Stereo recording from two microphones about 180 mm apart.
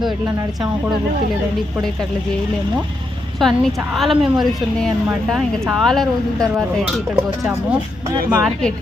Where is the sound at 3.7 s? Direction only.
10° right (ahead or behind).